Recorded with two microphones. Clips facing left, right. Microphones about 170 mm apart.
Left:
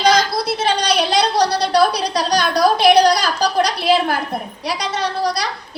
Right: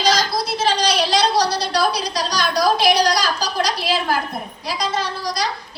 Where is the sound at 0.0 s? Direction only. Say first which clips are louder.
Left 4 dB; 60° left (ahead or behind).